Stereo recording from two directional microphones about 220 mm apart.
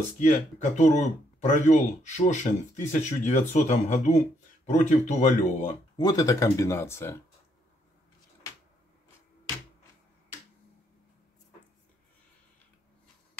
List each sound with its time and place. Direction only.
0.2 s speech: 35° left (ahead or behind)
5.9 s speech: 15° left (ahead or behind)